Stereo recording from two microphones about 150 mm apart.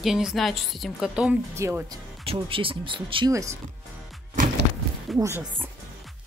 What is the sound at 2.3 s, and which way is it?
Speech, 35° right (ahead or behind).